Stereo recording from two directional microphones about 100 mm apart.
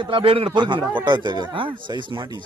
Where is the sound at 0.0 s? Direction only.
60° right (ahead or behind).